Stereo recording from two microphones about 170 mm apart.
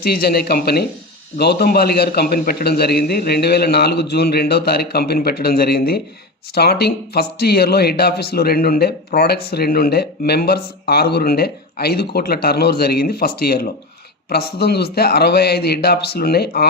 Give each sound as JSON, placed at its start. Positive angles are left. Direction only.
{"t": 0.0, "sound": "speech", "side_deg": 65}